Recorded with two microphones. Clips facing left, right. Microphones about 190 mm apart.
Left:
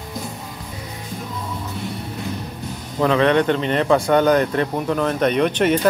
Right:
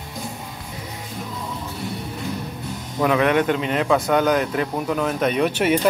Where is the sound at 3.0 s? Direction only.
10° right (ahead or behind).